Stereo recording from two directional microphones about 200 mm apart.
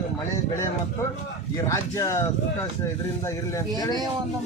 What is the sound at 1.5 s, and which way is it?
Speech, 15° left (ahead or behind).